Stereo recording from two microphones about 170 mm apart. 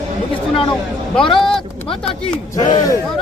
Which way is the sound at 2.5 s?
20° left (ahead or behind).